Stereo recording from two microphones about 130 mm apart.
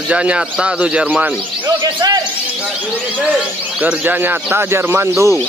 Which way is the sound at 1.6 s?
35° right (ahead or behind).